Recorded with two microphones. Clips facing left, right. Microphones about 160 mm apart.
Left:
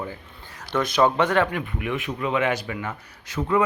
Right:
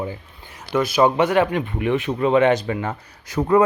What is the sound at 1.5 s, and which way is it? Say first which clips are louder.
Speech: right 7 dB; 30° right (ahead or behind).